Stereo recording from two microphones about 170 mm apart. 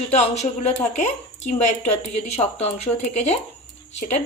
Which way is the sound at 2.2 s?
40° left (ahead or behind).